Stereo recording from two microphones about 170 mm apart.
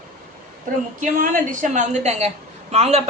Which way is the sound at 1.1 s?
50° right (ahead or behind).